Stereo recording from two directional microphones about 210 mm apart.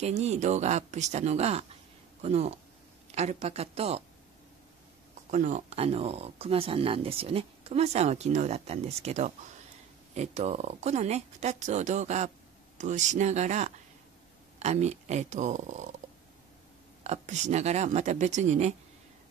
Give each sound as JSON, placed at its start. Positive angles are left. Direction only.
{"t": 0.0, "sound": "a woman's voice", "side_deg": -30}
{"t": 5.3, "sound": "speech", "side_deg": -35}
{"t": 17.0, "sound": "speech", "side_deg": -30}